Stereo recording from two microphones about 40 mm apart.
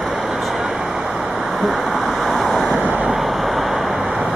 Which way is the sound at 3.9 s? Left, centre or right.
Centre.